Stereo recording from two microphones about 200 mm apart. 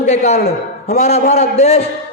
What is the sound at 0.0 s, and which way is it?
A man's voice, 35° left (ahead or behind).